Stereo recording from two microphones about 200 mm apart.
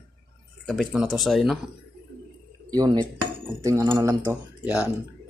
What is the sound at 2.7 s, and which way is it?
Speech, 20° right (ahead or behind).